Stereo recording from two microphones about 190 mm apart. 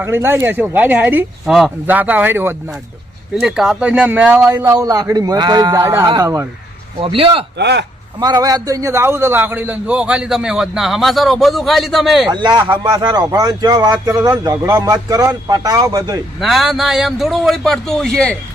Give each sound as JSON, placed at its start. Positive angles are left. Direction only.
{"t": 0.0, "sound": "a man's voice", "side_deg": -10}
{"t": 7.0, "sound": "speech", "side_deg": -30}
{"t": 7.6, "sound": "speech", "side_deg": -65}
{"t": 8.2, "sound": "a man's voice", "side_deg": -20}
{"t": 12.3, "sound": "a man's voice", "side_deg": -20}
{"t": 16.4, "sound": "a man's voice", "side_deg": 0}